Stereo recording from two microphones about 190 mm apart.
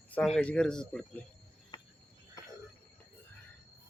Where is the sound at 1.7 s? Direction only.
25° left (ahead or behind).